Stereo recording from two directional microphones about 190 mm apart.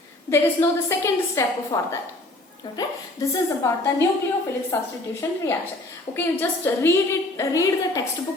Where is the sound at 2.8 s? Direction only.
15° left (ahead or behind).